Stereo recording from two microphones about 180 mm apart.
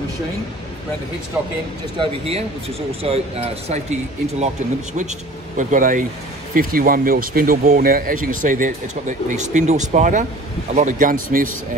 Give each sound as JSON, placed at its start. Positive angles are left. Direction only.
{"t": 2.0, "sound": "speech", "side_deg": -35}
{"t": 5.6, "sound": "speech", "side_deg": -45}